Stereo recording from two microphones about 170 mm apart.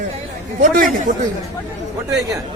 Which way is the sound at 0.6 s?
55° right (ahead or behind).